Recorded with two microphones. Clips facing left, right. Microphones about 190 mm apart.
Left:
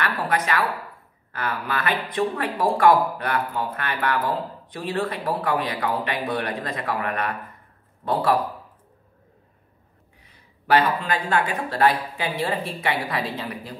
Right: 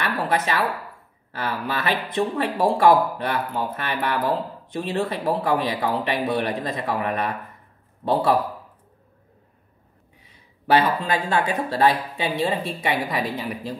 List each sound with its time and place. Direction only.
0.0 s speech: 25° right (ahead or behind)
11.4 s speech: 25° right (ahead or behind)